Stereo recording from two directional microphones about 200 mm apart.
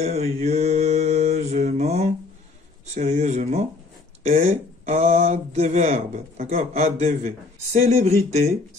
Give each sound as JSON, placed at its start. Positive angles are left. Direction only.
{"t": 0.0, "sound": "mantra", "side_deg": -30}
{"t": 2.9, "sound": "speech", "side_deg": -35}